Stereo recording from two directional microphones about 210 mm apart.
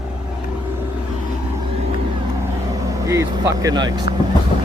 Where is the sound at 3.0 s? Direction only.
15° right (ahead or behind).